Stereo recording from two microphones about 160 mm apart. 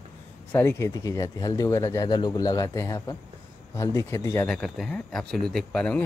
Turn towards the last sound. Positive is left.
turn(degrees=5)  # may be behind; listen again after turning